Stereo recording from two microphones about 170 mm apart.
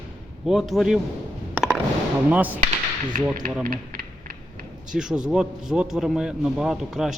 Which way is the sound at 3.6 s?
55° right (ahead or behind).